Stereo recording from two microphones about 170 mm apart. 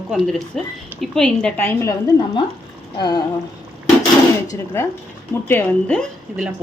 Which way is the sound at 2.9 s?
25° left (ahead or behind).